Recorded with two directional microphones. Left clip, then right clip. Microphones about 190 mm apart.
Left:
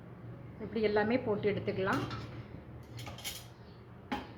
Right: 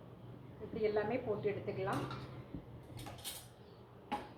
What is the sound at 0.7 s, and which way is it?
Speech, 25° left (ahead or behind).